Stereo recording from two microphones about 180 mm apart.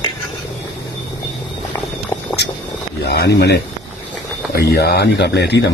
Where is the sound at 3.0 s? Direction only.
65° left (ahead or behind).